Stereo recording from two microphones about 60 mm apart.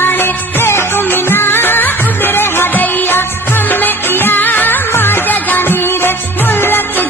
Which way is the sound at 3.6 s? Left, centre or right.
Left.